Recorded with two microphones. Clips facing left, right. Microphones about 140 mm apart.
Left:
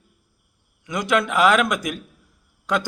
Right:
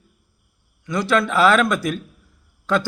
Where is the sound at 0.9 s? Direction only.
15° left (ahead or behind).